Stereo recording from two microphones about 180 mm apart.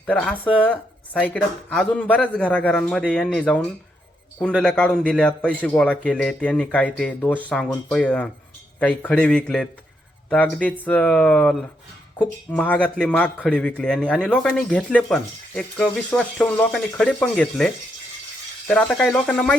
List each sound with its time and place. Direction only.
0.0 s a man's voice: 5° left (ahead or behind)
18.7 s speech: 5° left (ahead or behind)